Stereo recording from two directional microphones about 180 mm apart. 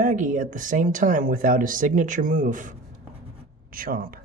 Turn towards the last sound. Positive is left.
turn(degrees=-55)  # may be behind; listen again after turning